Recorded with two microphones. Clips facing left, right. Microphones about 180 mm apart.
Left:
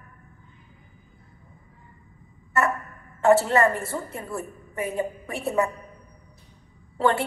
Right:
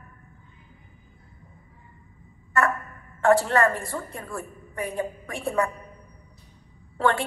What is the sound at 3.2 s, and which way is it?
A woman's voice, 5° left (ahead or behind).